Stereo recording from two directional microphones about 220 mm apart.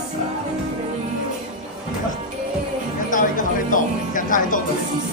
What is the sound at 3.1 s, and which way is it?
Music, 35° left (ahead or behind).